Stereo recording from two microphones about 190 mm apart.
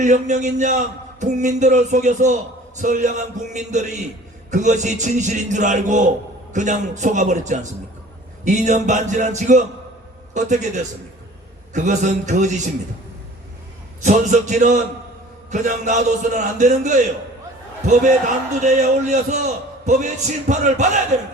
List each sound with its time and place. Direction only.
0.0 s a man's voice: 40° right (ahead or behind)
11.7 s a man's voice: 40° right (ahead or behind)
14.0 s a man's voice: 40° right (ahead or behind)
18.6 s a man's voice: 40° right (ahead or behind)